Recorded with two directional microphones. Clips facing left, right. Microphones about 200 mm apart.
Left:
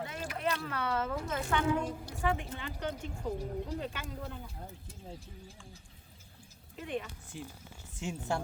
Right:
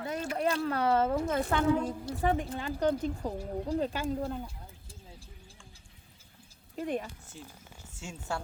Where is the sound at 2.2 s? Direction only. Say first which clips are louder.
Right 4 dB; 35° right (ahead or behind).